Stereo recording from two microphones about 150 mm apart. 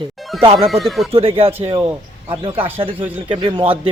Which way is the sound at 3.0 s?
10° right (ahead or behind).